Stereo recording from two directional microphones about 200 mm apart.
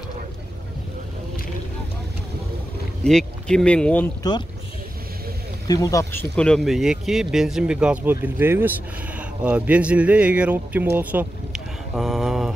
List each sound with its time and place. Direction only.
3.0 s speech: 5° left (ahead or behind)
4.2 s speech: 20° left (ahead or behind)
5.7 s speech: 15° left (ahead or behind)
6.3 s speech: 5° left (ahead or behind)